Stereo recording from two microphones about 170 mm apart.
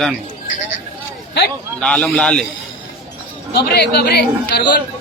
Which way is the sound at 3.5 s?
70° left (ahead or behind).